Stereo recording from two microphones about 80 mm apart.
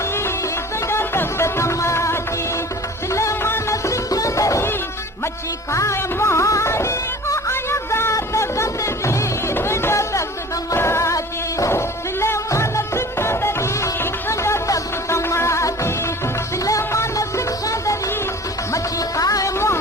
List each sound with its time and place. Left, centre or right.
0.0 s music: left
5.7 s music: left
10.8 s mosquito: left
16.6 s music: left